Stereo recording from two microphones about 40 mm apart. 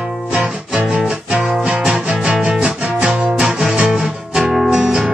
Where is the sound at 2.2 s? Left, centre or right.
Centre.